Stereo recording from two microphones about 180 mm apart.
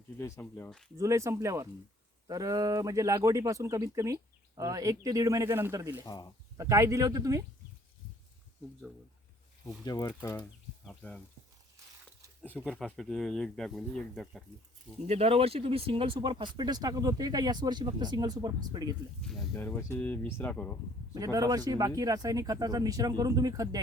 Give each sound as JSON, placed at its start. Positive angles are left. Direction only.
{"t": 0.2, "sound": "speech", "side_deg": 15}
{"t": 0.9, "sound": "speech", "side_deg": -15}
{"t": 6.1, "sound": "speech", "side_deg": 20}
{"t": 6.6, "sound": "speech", "side_deg": -15}
{"t": 9.8, "sound": "speech", "side_deg": 20}
{"t": 12.4, "sound": "speech", "side_deg": 5}
{"t": 15.0, "sound": "speech", "side_deg": -35}
{"t": 19.2, "sound": "speech", "side_deg": 0}
{"t": 21.1, "sound": "speech", "side_deg": -20}